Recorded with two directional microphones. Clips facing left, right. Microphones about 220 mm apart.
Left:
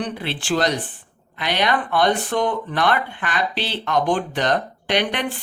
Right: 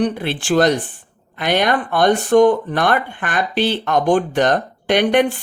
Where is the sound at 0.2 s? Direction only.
50° right (ahead or behind).